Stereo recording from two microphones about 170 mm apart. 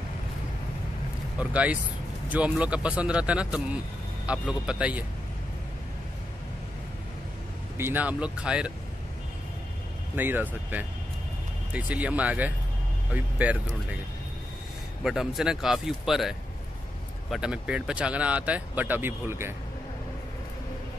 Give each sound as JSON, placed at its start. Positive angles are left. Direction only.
{"t": 1.4, "sound": "speech", "side_deg": -10}
{"t": 7.7, "sound": "speech", "side_deg": -10}
{"t": 10.1, "sound": "speech", "side_deg": -10}
{"t": 15.0, "sound": "speech", "side_deg": 0}